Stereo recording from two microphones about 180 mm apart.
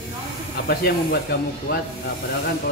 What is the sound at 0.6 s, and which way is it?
Speech, 60° left (ahead or behind).